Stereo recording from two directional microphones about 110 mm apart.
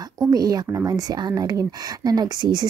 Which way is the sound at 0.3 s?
35° right (ahead or behind).